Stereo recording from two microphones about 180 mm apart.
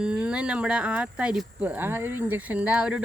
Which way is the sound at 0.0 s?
5° right (ahead or behind).